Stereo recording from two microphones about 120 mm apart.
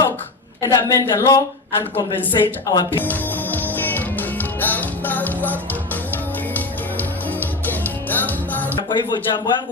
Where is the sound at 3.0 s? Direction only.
15° left (ahead or behind).